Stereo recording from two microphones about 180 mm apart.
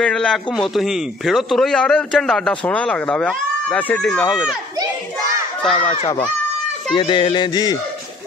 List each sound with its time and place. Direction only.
0.0 s a man's voice: 5° left (ahead or behind)
5.6 s a man's voice: 5° left (ahead or behind)
6.9 s music: 25° left (ahead or behind)